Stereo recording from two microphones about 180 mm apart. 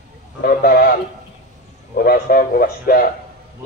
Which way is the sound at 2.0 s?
55° left (ahead or behind).